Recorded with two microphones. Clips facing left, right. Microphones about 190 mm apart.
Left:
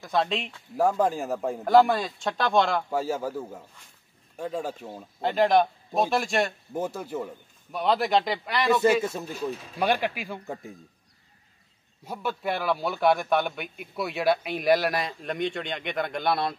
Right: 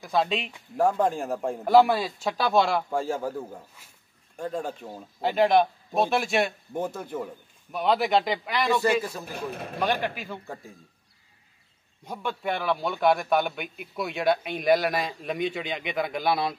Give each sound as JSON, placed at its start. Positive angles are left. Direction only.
{"t": 0.0, "sound": "a man's voice", "side_deg": 0}
{"t": 2.9, "sound": "a man's voice", "side_deg": 5}
{"t": 9.3, "sound": "speech", "side_deg": -60}
{"t": 9.8, "sound": "speech", "side_deg": 10}
{"t": 12.0, "sound": "a man's voice", "side_deg": 5}